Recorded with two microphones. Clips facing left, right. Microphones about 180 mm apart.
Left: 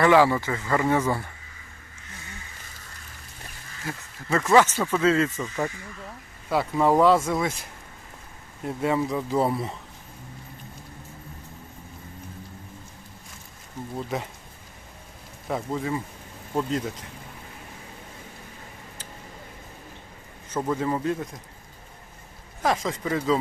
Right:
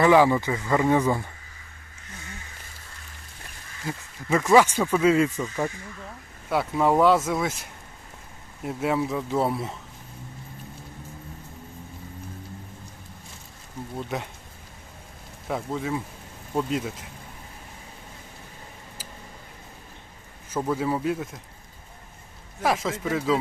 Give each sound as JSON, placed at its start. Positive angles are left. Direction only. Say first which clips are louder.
{"t": 0.0, "sound": "speech", "louder": "right 1 dB", "side_deg": -15}
{"t": 3.8, "sound": "speech", "louder": "right 2 dB", "side_deg": -10}
{"t": 13.9, "sound": "speech", "louder": "left 1 dB", "side_deg": 0}
{"t": 15.4, "sound": "speech", "louder": "left 1 dB", "side_deg": 0}
{"t": 20.5, "sound": "speech", "louder": "even", "side_deg": -10}
{"t": 22.6, "sound": "speech", "louder": "even", "side_deg": -5}